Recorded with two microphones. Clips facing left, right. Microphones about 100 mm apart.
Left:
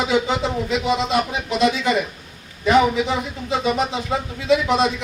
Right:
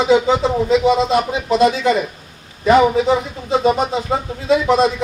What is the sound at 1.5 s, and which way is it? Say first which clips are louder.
Speech: right 6 dB; 35° right (ahead or behind).